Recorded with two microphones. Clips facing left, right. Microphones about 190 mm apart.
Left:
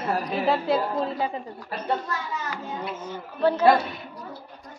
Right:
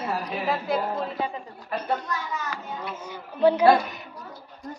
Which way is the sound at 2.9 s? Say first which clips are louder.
Left 2 dB; 10° right (ahead or behind).